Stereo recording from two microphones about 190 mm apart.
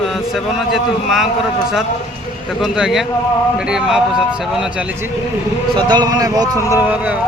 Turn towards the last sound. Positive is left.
turn(degrees=-10)  # may be behind; listen again after turning